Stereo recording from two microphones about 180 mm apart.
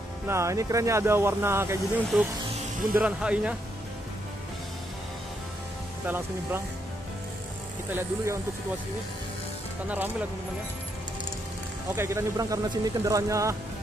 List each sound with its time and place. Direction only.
0.3 s speech: 15° right (ahead or behind)
6.0 s speech: 10° right (ahead or behind)
7.9 s speech: 10° right (ahead or behind)
11.9 s speech: 15° right (ahead or behind)